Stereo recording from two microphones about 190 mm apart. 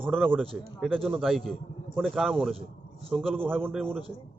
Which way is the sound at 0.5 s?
Centre (ahead or behind).